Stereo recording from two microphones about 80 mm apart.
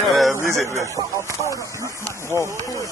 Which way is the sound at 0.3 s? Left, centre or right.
Right.